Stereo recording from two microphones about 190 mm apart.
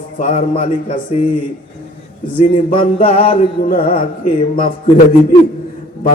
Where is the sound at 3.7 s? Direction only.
50° left (ahead or behind).